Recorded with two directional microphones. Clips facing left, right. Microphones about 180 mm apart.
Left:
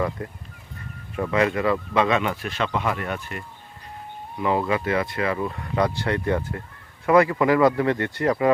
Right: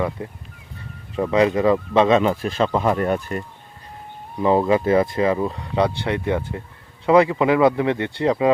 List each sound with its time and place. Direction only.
1.1 s speech: 25° right (ahead or behind)